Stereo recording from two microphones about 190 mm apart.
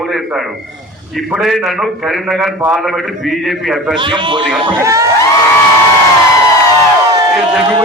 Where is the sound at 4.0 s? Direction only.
25° right (ahead or behind).